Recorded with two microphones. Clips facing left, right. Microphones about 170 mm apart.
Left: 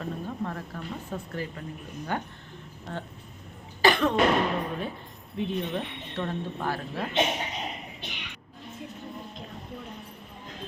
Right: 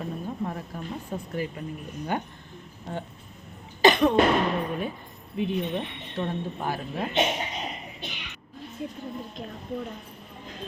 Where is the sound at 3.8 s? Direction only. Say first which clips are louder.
Right 3 dB; 20° right (ahead or behind).